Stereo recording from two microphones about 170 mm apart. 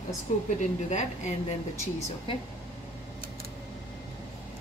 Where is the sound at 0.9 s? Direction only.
45° left (ahead or behind).